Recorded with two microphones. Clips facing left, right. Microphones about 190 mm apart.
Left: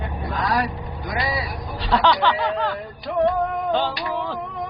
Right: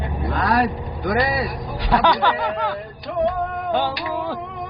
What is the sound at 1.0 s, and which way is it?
Speech, 55° right (ahead or behind).